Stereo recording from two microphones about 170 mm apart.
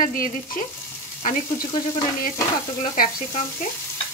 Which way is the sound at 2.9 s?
50° left (ahead or behind).